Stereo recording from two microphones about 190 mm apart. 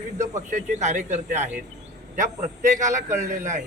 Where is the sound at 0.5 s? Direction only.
40° right (ahead or behind).